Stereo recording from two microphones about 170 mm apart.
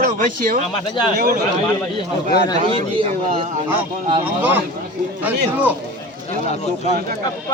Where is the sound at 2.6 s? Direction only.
35° right (ahead or behind).